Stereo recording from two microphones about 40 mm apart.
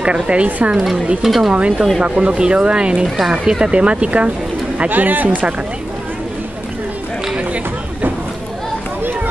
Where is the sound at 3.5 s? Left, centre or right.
Right.